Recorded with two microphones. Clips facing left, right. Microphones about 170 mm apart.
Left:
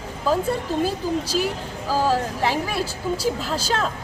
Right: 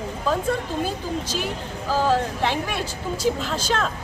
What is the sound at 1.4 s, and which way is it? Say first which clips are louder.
Speech: left 1 dB; 10° left (ahead or behind).